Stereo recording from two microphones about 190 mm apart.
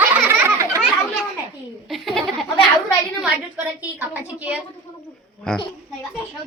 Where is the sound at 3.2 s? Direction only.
10° right (ahead or behind).